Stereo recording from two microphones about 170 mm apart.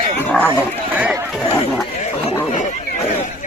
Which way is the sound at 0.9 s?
10° right (ahead or behind).